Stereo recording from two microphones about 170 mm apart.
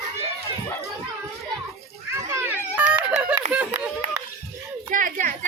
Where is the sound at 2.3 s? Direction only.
10° right (ahead or behind).